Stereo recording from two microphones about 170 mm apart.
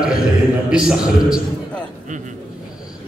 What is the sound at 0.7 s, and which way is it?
Speech, 5° right (ahead or behind).